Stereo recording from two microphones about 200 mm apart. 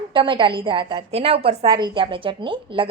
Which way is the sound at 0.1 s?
25° right (ahead or behind).